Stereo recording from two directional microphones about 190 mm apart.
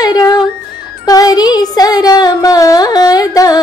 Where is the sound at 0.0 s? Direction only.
20° left (ahead or behind).